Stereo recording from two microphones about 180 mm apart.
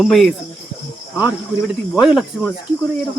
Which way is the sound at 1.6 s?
Centre (ahead or behind).